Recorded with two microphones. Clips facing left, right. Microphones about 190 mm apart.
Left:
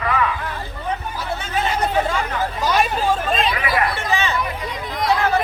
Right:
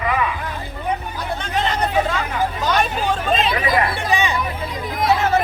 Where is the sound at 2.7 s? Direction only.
5° left (ahead or behind).